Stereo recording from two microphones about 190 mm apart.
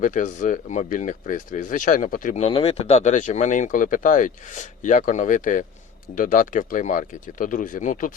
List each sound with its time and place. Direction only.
0.0 s speech: 40° left (ahead or behind)